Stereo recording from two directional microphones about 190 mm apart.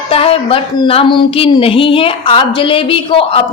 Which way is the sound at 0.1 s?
30° left (ahead or behind).